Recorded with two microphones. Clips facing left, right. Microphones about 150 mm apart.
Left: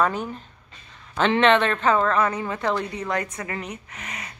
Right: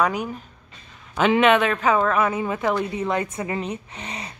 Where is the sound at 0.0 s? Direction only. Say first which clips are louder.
Right 1 dB; 10° right (ahead or behind).